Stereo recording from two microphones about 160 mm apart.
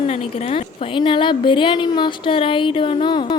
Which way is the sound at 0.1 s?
40° left (ahead or behind).